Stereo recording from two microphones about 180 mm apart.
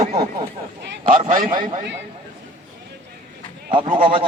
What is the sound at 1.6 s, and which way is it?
Speech, 25° right (ahead or behind).